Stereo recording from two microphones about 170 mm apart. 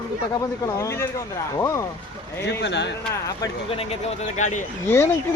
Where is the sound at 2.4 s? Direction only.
90° left.